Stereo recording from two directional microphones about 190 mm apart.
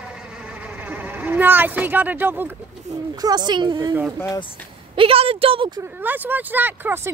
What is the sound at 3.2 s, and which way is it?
Speech, 25° right (ahead or behind).